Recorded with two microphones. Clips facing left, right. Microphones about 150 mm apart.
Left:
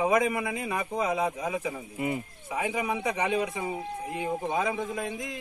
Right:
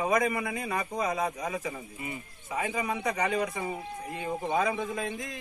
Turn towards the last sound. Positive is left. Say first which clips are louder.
# left 1 dB
turn(degrees=5)  # may be behind; listen again after turning